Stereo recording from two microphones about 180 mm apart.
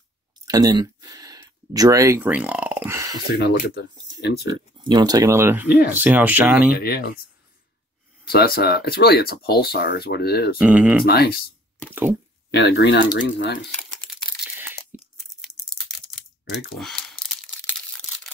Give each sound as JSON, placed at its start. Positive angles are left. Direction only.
{"t": 0.5, "sound": "speech", "side_deg": -20}
{"t": 3.3, "sound": "speech", "side_deg": 70}
{"t": 4.7, "sound": "speech", "side_deg": -25}
{"t": 5.7, "sound": "speech", "side_deg": 60}
{"t": 5.9, "sound": "speech", "side_deg": -10}
{"t": 6.8, "sound": "speech", "side_deg": 60}
{"t": 8.3, "sound": "speech", "side_deg": 60}
{"t": 10.6, "sound": "speech", "side_deg": -10}
{"t": 11.1, "sound": "speech", "side_deg": 65}
{"t": 11.9, "sound": "speech", "side_deg": -10}
{"t": 12.4, "sound": "speech", "side_deg": 70}
{"t": 14.4, "sound": "crunch", "side_deg": -10}
{"t": 16.7, "sound": "speech", "side_deg": 5}